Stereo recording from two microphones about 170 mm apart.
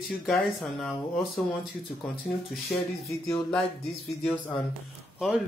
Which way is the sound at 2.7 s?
5° left (ahead or behind).